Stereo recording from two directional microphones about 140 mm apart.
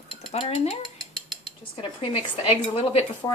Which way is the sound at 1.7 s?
35° left (ahead or behind).